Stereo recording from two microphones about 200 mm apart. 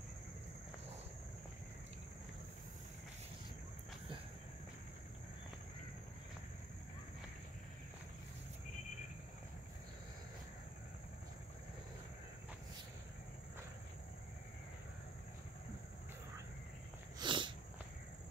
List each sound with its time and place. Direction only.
17.2 s sneeze: 25° right (ahead or behind)